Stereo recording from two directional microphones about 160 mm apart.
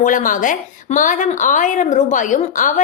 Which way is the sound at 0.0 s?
55° left (ahead or behind).